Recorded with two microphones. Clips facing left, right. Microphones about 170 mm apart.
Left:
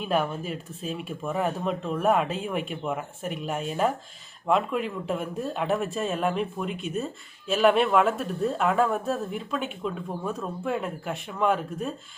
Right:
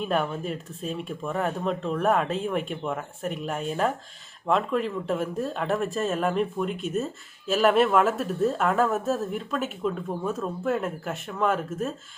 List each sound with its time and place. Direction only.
0.0 s speech: centre (ahead or behind)